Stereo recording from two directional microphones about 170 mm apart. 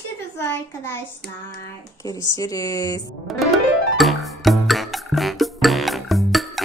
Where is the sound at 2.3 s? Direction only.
20° left (ahead or behind).